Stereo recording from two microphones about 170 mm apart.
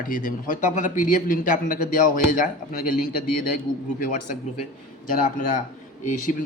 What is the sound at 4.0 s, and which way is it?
Speech, 50° left (ahead or behind).